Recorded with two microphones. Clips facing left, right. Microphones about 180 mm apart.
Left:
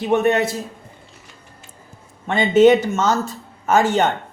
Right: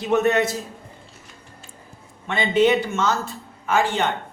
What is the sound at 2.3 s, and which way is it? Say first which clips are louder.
Speech: left 6 dB; 45° left (ahead or behind).